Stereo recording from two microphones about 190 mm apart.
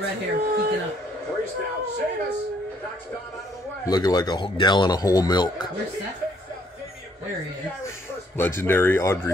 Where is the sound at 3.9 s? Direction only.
20° left (ahead or behind).